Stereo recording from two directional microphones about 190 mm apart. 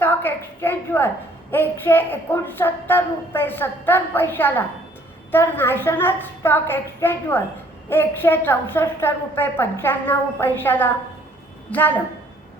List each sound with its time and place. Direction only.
0.0 s a woman's voice: 10° left (ahead or behind)